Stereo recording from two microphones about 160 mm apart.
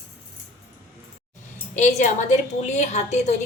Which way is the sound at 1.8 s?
45° left (ahead or behind).